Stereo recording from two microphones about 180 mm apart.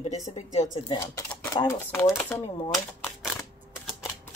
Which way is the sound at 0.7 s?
20° left (ahead or behind).